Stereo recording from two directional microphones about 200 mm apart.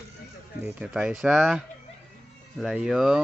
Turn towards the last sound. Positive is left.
turn(degrees=0)  # may be behind; listen again after turning